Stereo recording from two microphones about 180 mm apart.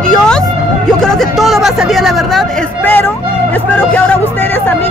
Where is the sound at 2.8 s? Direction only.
10° left (ahead or behind).